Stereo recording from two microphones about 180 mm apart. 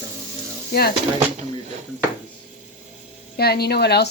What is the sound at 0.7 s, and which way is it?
Speech, 60° left (ahead or behind).